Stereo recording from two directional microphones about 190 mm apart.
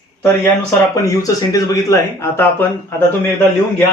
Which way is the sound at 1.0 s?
20° left (ahead or behind).